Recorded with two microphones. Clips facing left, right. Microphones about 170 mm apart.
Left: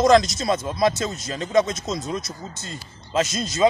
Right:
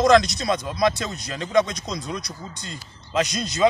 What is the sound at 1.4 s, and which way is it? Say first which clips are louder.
Speech: left 1 dB; 25° left (ahead or behind).